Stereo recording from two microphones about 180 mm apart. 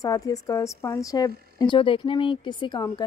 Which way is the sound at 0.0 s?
20° left (ahead or behind).